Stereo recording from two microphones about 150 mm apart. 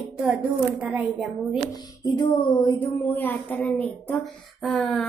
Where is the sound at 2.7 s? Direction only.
10° left (ahead or behind).